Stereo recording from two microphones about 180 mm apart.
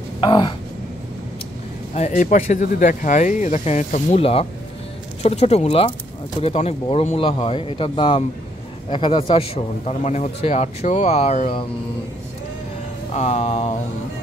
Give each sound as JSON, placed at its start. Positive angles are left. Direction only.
{"t": 0.2, "sound": "a man's voice", "side_deg": 25}
{"t": 2.0, "sound": "a man's voice", "side_deg": 40}
{"t": 13.1, "sound": "a man's voice", "side_deg": 40}